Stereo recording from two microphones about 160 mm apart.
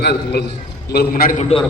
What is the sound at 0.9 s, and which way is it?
Speech, 75° left (ahead or behind).